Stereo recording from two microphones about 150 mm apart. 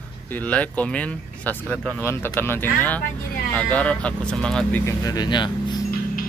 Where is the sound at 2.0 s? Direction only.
15° left (ahead or behind).